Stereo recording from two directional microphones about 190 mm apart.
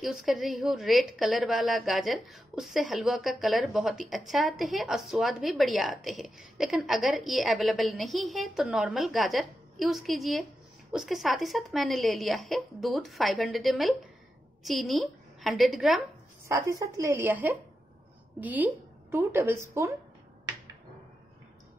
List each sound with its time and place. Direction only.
0.0 s a woman's voice: centre (ahead or behind)
16.4 s a woman's voice: 15° right (ahead or behind)